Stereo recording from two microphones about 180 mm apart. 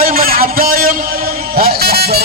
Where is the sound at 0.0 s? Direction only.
50° right (ahead or behind).